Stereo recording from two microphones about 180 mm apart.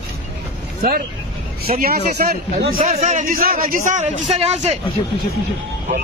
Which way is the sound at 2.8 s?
35° right (ahead or behind).